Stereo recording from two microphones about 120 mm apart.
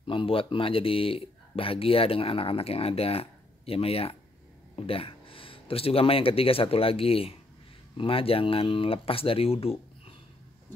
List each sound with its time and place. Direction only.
0.0 s speech: 45° left (ahead or behind)